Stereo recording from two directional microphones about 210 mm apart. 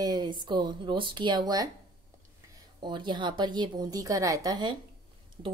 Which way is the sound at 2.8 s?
20° right (ahead or behind).